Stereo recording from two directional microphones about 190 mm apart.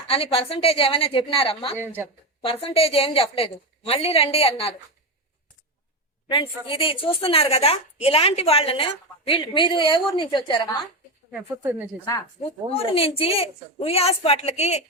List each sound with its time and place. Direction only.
0.1 s a woman's voice: 30° left (ahead or behind)
1.8 s speech: 10° right (ahead or behind)
2.4 s a woman's voice: 30° left (ahead or behind)
6.2 s a woman's voice: 25° left (ahead or behind)
11.3 s speech: 5° right (ahead or behind)
12.7 s a woman's voice: 30° left (ahead or behind)